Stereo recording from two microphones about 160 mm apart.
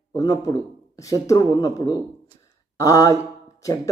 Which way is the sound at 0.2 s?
20° left (ahead or behind).